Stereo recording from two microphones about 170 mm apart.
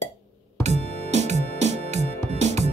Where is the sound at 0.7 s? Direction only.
40° right (ahead or behind).